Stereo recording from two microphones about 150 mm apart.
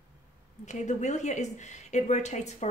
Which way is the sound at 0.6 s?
50° left (ahead or behind).